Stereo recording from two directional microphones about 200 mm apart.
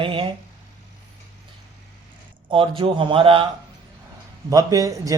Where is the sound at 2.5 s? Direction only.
25° right (ahead or behind).